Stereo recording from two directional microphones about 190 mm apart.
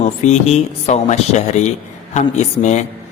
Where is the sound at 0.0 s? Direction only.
35° left (ahead or behind).